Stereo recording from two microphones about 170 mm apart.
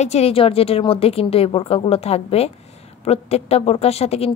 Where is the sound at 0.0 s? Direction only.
40° left (ahead or behind).